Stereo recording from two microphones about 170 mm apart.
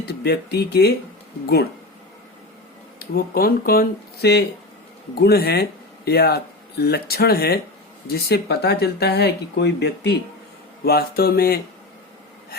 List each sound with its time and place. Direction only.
0.0 s speech: 70° left (ahead or behind)
3.0 s speech: 60° left (ahead or behind); by 10.2 s 75° left (ahead or behind)
10.8 s speech: 65° left (ahead or behind)